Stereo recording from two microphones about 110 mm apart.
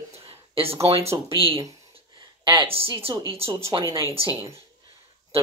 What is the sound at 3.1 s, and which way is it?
Speech, 35° right (ahead or behind).